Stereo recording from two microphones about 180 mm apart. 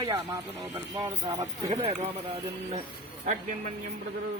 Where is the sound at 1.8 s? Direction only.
35° right (ahead or behind).